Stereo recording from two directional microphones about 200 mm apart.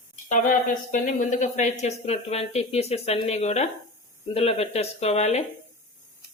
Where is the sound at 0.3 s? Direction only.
40° left (ahead or behind).